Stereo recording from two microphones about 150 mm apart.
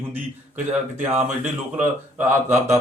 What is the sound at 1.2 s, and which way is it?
Speech, 10° right (ahead or behind).